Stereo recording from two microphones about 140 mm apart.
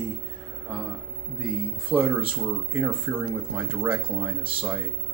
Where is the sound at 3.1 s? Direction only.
20° right (ahead or behind).